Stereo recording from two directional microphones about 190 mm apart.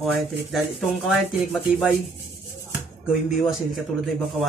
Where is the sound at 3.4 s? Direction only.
Centre (ahead or behind).